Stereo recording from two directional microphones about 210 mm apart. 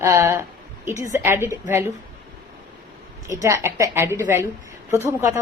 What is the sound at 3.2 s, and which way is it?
Speech, 15° right (ahead or behind).